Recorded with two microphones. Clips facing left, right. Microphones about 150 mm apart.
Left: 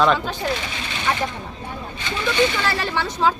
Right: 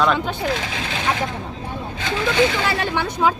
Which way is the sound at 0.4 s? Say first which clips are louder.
Right 2 dB; 90° right.